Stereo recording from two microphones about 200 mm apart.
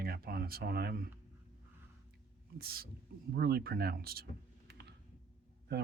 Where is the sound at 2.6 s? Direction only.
50° right (ahead or behind).